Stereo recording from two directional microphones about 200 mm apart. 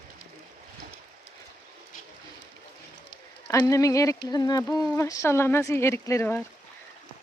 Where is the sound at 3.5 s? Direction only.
15° left (ahead or behind).